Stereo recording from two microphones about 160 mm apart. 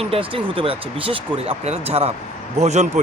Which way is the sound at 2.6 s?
45° right (ahead or behind).